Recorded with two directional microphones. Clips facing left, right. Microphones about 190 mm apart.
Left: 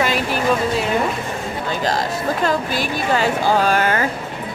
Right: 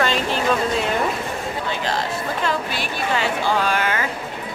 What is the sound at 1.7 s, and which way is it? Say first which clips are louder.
Speech: left 5 dB; 40° left (ahead or behind).